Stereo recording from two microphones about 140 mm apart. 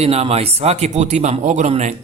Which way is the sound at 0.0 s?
50° right (ahead or behind).